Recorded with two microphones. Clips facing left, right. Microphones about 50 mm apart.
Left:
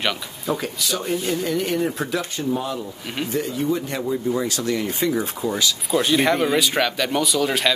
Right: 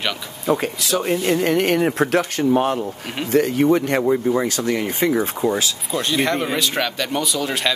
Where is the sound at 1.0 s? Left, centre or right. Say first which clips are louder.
Right 5 dB; right.